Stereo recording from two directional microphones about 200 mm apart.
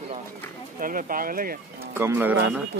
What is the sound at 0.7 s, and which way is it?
Speech, 45° right (ahead or behind).